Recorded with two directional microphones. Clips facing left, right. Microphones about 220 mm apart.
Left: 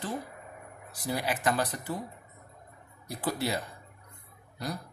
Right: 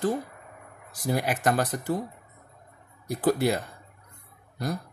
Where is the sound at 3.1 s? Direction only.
50° right (ahead or behind).